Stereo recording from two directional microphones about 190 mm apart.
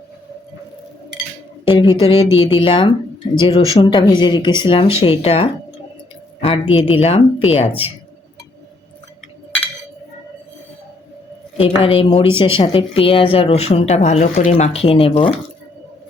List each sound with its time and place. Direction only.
1.6 s a woman's voice: 25° left (ahead or behind)
11.5 s a woman's voice: 30° left (ahead or behind)